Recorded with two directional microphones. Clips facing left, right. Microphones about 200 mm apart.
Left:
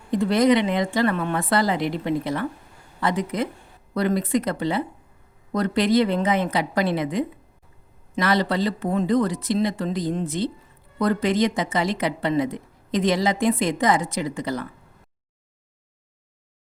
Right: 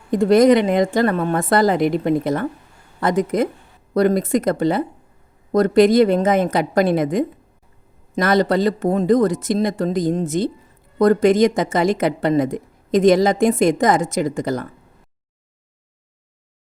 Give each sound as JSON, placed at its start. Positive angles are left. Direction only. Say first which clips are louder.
{"t": 0.1, "sound": "speech", "louder": "right 6 dB", "side_deg": -45}